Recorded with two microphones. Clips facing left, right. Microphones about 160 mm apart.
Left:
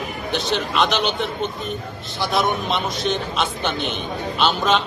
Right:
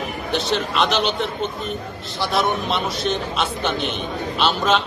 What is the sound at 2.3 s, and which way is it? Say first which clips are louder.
A man's voice: even; centre (ahead or behind).